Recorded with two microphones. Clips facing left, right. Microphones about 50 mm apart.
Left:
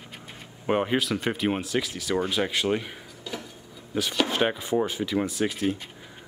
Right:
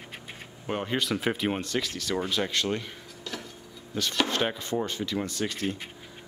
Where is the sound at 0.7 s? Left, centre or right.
Centre.